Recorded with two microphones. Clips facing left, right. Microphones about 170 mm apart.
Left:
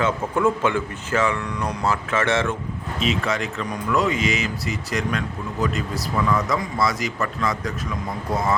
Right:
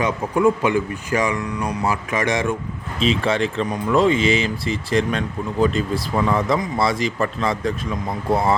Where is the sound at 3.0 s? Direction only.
30° right (ahead or behind).